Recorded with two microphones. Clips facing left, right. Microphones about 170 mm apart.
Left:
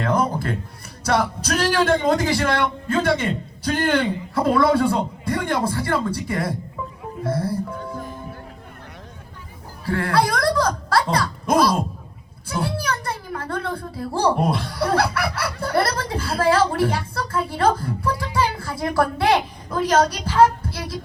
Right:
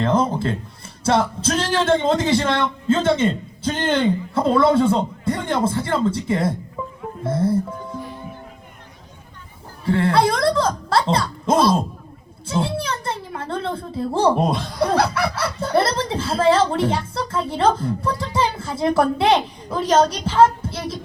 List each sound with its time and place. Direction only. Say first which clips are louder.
0.0 s a sound: right 2 dB; 25° right (ahead or behind)
1.0 s speech: right 2 dB; 25° right (ahead or behind)
9.8 s a woman's voice: right 3 dB; 25° right (ahead or behind)